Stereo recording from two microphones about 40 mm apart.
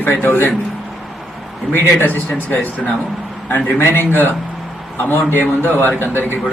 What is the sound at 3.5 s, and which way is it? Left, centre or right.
A man's voice, left.